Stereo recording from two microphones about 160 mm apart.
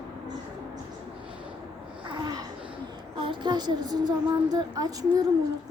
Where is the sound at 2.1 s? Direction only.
25° right (ahead or behind).